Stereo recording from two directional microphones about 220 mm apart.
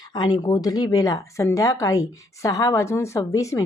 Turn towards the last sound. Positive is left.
turn(degrees=15)  # may be behind; listen again after turning